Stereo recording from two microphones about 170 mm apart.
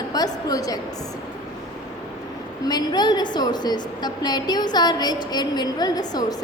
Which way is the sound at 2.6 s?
25° left (ahead or behind).